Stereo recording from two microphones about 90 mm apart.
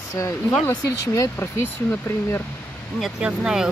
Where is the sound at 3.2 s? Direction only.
10° right (ahead or behind).